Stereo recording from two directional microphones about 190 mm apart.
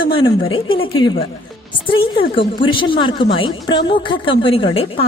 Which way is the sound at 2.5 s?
25° left (ahead or behind).